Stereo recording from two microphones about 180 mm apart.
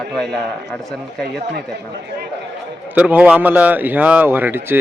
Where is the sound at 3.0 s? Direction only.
10° right (ahead or behind).